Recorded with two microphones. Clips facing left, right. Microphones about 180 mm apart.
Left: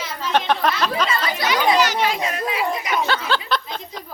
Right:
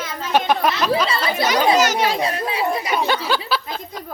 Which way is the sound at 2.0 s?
35° right (ahead or behind).